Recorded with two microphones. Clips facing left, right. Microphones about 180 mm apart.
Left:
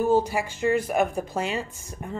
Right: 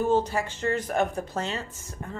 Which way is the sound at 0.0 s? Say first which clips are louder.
Left 2 dB; 10° left (ahead or behind).